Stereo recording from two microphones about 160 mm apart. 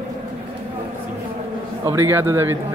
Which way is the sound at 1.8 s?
15° right (ahead or behind).